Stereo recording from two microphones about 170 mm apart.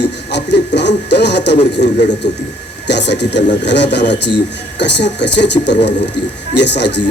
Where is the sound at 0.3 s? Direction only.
90° left.